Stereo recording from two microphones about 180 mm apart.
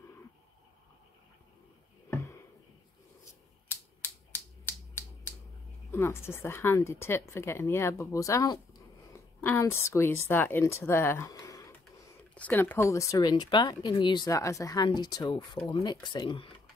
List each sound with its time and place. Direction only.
2.0 s a sound: 15° left (ahead or behind)
3.6 s typewriter: 10° left (ahead or behind)
5.9 s a woman's voice: 15° left (ahead or behind)